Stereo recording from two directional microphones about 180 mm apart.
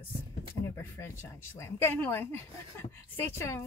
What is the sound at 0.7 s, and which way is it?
Speech, 15° left (ahead or behind).